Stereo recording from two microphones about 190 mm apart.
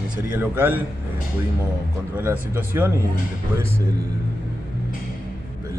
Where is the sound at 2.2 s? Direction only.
10° right (ahead or behind).